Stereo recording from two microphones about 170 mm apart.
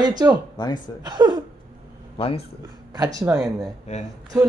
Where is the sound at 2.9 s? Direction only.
20° right (ahead or behind).